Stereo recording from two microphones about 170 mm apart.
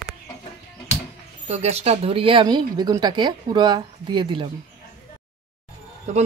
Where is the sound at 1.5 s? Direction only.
40° right (ahead or behind).